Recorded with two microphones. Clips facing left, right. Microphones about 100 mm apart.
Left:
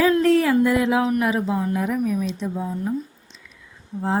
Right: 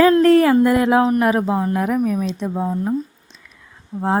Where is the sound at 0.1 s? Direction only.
55° right (ahead or behind).